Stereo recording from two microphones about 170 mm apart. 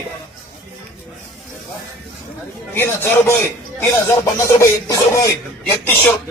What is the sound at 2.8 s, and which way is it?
Speech, 10° left (ahead or behind).